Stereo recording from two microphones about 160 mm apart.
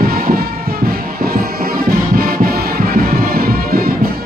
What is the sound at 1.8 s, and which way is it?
Music, 70° right (ahead or behind).